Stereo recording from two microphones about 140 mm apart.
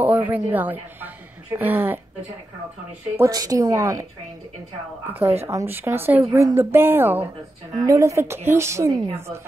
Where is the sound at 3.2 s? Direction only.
25° right (ahead or behind).